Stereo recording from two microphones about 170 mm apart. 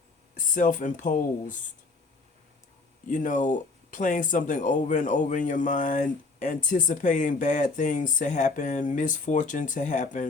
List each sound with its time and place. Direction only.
0.3 s speech: 50° left (ahead or behind)
3.1 s speech: 50° left (ahead or behind)